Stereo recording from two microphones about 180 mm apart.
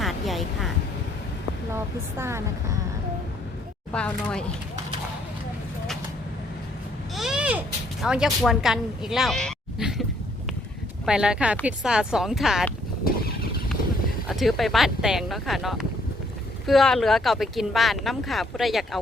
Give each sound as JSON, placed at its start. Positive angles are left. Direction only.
{"t": 0.0, "sound": "a sound", "side_deg": 0}
{"t": 1.7, "sound": "speech", "side_deg": -15}
{"t": 3.9, "sound": "speech", "side_deg": 5}
{"t": 7.2, "sound": "a sound", "side_deg": -5}
{"t": 8.0, "sound": "a woman's voice", "side_deg": -5}
{"t": 13.1, "sound": "vehicle", "side_deg": 55}
{"t": 14.3, "sound": "speech", "side_deg": 0}